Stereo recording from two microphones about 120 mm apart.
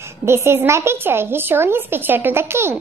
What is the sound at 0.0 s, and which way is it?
A child's voice, 20° right (ahead or behind).